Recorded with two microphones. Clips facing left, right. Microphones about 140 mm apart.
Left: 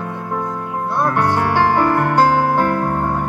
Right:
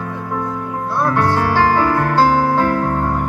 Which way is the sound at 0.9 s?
20° left (ahead or behind).